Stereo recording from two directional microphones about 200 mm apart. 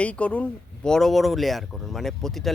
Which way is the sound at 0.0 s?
5° left (ahead or behind).